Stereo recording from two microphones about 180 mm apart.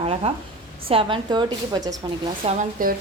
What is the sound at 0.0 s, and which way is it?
A woman's voice, 35° right (ahead or behind).